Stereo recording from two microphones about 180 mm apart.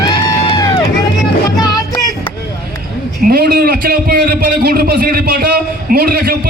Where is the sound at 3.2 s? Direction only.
55° right (ahead or behind).